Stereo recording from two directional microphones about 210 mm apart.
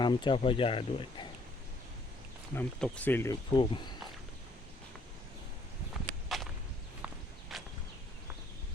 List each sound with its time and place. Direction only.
0.0 s speech: 20° left (ahead or behind)
2.6 s speech: 5° left (ahead or behind)
3.5 s speech: 25° left (ahead or behind)
5.9 s walk: centre (ahead or behind)
7.5 s a sound: centre (ahead or behind)